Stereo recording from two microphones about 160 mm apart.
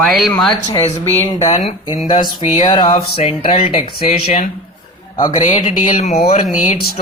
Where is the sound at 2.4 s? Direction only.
40° left (ahead or behind).